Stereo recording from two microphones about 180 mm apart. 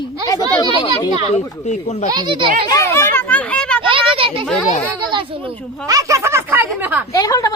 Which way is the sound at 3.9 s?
30° right (ahead or behind).